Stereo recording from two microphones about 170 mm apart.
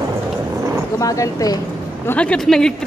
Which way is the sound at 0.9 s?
20° left (ahead or behind).